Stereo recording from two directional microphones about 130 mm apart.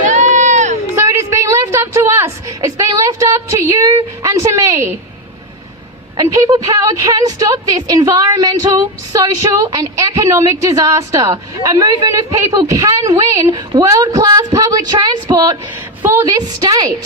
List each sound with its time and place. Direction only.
0.0 s crowd: 65° right (ahead or behind)
0.9 s a sound: 20° right (ahead or behind)
6.1 s a woman's voice: 25° right (ahead or behind)